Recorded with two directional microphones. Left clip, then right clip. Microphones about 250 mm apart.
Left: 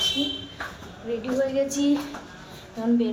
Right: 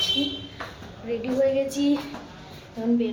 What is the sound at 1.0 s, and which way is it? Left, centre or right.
Speech, centre.